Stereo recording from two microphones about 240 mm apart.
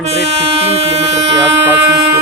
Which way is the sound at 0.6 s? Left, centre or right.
Right.